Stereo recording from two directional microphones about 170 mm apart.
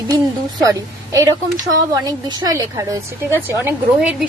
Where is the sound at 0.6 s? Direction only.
20° right (ahead or behind).